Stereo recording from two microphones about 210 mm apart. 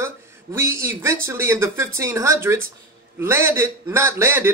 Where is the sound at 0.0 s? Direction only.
10° right (ahead or behind).